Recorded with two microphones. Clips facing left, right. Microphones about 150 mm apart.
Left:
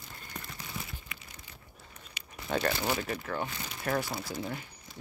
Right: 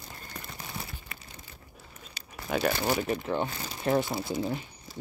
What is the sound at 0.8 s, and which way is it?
Crumpling, 35° right (ahead or behind).